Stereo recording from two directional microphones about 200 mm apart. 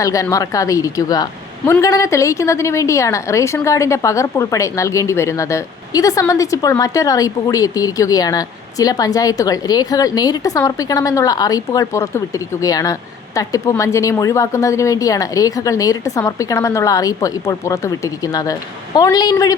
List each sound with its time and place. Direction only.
0.0 s a woman's voice: 15° left (ahead or behind)